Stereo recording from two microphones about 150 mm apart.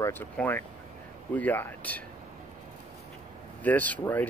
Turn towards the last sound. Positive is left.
turn(degrees=10)  # may be behind; listen again after turning